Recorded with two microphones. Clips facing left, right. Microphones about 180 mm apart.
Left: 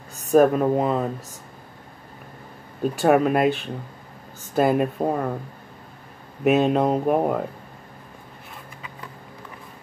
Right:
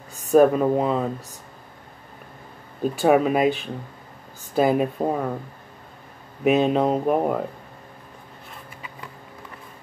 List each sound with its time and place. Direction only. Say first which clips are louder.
0.3 s speech: right 1 dB; centre (ahead or behind)
2.8 s speech: even; centre (ahead or behind)
6.4 s speech: even; centre (ahead or behind)